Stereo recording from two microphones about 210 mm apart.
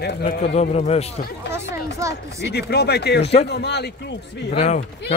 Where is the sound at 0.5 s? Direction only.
30° left (ahead or behind).